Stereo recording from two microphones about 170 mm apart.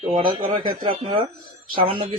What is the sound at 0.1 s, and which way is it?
Speech, 30° right (ahead or behind).